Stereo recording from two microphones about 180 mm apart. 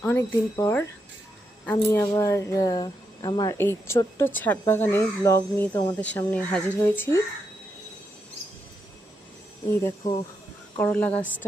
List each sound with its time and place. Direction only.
0.0 s speech: 10° left (ahead or behind)
9.6 s speech: 15° left (ahead or behind)